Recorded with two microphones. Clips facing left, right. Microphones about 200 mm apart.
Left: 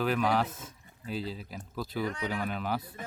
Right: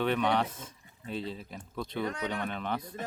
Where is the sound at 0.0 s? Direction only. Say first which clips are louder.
Even; centre (ahead or behind).